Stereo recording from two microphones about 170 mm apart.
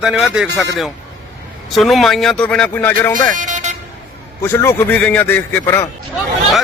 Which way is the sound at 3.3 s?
50° right (ahead or behind).